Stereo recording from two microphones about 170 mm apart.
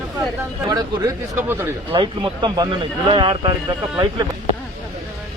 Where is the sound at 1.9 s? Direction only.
30° right (ahead or behind).